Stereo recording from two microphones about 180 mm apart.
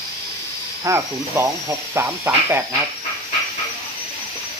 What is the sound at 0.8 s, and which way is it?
Speech, 15° right (ahead or behind).